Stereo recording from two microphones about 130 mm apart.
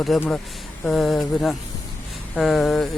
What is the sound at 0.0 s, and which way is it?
Mantra, centre (ahead or behind).